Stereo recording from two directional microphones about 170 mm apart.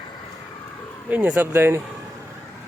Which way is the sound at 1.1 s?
10° right (ahead or behind).